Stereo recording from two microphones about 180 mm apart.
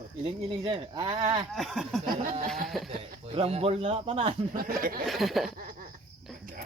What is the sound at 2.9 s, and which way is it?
Speech, 35° right (ahead or behind).